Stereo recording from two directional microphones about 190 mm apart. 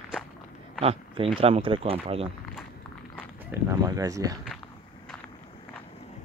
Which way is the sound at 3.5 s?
15° right (ahead or behind).